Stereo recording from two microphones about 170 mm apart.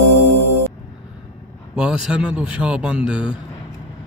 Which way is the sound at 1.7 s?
5° right (ahead or behind).